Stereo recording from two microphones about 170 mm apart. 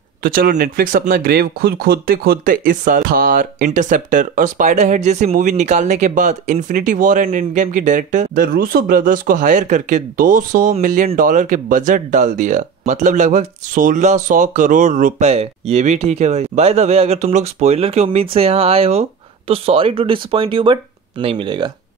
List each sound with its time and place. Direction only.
0.2 s speech: 60° right (ahead or behind); by 21.6 s 30° right (ahead or behind)